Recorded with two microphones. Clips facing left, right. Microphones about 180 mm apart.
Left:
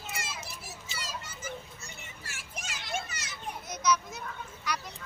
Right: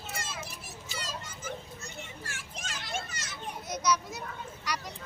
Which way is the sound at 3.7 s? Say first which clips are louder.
Even; 10° right (ahead or behind).